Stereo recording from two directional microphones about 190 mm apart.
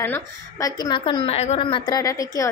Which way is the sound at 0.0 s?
15° left (ahead or behind).